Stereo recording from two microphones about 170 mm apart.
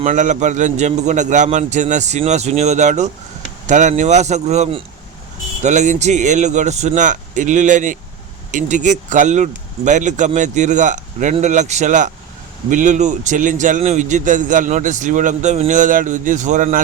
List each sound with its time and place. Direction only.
0.0 s a man's voice: 45° right (ahead or behind)